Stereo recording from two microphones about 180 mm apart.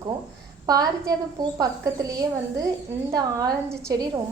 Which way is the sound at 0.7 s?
20° right (ahead or behind).